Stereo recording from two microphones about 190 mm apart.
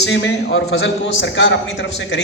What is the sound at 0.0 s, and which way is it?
A man's voice, 65° left (ahead or behind).